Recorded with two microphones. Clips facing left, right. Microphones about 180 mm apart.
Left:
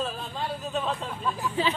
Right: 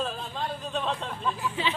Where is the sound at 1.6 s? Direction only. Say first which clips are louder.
Left 5 dB; 40° left (ahead or behind).